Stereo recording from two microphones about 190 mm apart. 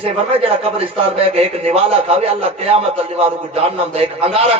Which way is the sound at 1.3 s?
30° right (ahead or behind).